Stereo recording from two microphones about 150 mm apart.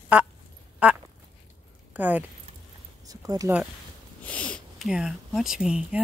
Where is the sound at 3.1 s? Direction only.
25° right (ahead or behind).